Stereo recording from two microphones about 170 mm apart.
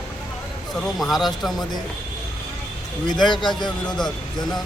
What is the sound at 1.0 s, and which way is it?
Speech, centre (ahead or behind).